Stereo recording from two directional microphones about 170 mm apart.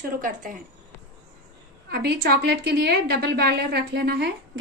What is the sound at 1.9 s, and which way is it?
A woman's voice, 65° right (ahead or behind).